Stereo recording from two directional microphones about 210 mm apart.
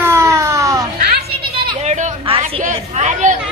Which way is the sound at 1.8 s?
35° right (ahead or behind).